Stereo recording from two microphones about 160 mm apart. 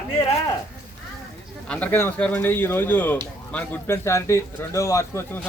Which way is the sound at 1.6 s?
10° left (ahead or behind).